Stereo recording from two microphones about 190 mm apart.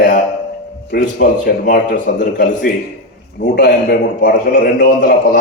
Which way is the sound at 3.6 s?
65° left (ahead or behind).